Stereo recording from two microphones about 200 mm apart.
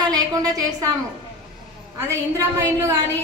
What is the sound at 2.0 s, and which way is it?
Speech, 15° right (ahead or behind).